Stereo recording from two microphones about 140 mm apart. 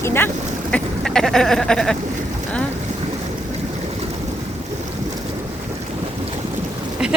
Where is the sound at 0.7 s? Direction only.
5° left (ahead or behind).